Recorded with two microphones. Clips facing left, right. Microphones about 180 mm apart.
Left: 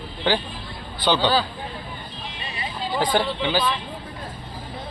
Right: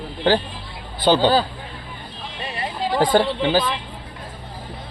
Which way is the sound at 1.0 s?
45° right (ahead or behind).